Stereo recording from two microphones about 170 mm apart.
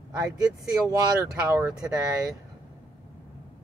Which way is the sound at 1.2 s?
15° right (ahead or behind).